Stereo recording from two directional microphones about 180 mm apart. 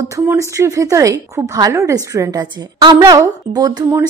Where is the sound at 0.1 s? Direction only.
15° right (ahead or behind).